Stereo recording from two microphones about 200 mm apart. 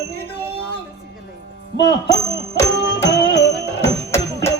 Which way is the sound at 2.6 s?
60° left (ahead or behind).